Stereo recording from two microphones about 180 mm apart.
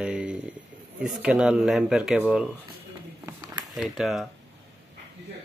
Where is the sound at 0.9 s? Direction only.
5° right (ahead or behind).